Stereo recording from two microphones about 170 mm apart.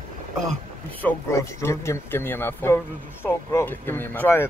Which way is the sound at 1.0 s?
15° left (ahead or behind).